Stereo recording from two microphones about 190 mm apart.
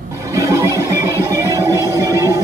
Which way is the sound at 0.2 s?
15° right (ahead or behind).